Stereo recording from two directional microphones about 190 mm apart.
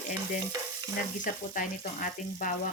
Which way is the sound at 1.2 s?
45° left (ahead or behind).